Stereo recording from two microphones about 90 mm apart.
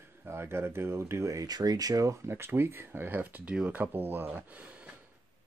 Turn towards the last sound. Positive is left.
turn(degrees=-15)  # may be behind; listen again after turning